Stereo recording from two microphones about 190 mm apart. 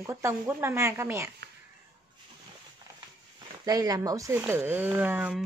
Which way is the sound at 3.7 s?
20° right (ahead or behind).